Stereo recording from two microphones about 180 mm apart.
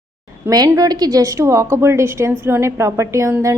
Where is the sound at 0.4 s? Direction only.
15° right (ahead or behind).